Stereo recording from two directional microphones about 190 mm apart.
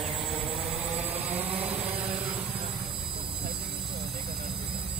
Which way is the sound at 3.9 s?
Centre (ahead or behind).